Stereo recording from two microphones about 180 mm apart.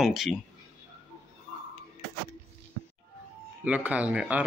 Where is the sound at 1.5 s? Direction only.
40° right (ahead or behind).